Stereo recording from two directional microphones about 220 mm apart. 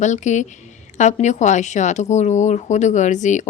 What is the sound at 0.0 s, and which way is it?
Speech, 35° left (ahead or behind).